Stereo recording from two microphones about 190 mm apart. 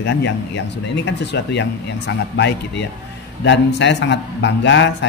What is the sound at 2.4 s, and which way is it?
Speech, 65° left (ahead or behind).